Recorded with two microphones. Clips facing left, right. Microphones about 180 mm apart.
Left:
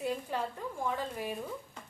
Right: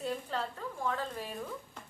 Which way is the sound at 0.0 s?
10° left (ahead or behind).